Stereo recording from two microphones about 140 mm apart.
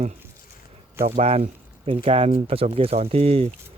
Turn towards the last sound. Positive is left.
turn(degrees=-45)  # may be behind; listen again after turning